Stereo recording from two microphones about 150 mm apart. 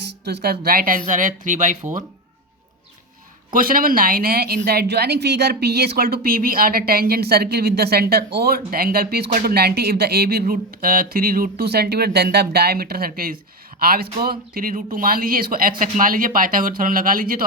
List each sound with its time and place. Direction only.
0.3 s speech: 90° right; by 2.0 s 55° right (ahead or behind)
3.5 s a woman's voice: 70° right (ahead or behind)
15.8 s speech: 65° right (ahead or behind)